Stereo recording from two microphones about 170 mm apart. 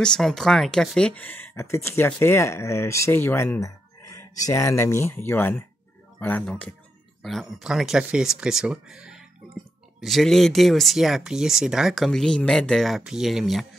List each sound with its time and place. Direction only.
0.0 s speech: 5° left (ahead or behind)